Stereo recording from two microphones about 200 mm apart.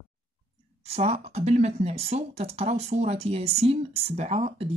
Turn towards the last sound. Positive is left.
turn(degrees=-30)  # may be behind; listen again after turning